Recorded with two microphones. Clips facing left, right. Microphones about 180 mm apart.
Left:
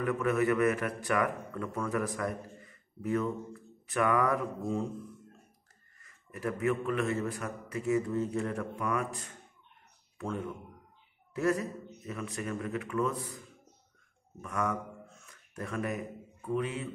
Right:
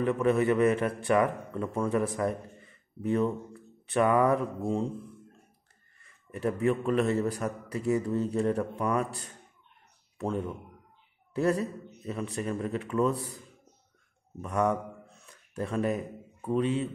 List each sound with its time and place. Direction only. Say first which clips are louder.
0.0 s a man's voice: right 3 dB; 30° right (ahead or behind)
6.0 s a man's voice: right 5 dB; 30° right (ahead or behind)
14.4 s speech: right 6 dB; 30° right (ahead or behind)